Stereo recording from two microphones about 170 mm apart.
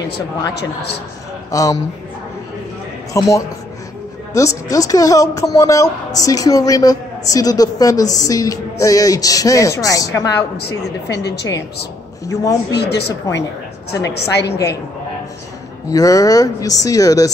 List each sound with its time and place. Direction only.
1.5 s speech: 20° left (ahead or behind)
3.1 s speech: 20° left (ahead or behind)
10.7 s a woman's voice: 85° left
12.7 s a woman's voice: 80° left
15.9 s speech: 20° left (ahead or behind)